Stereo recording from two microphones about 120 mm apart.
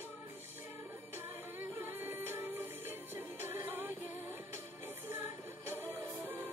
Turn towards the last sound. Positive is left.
turn(degrees=-15)  # may be behind; listen again after turning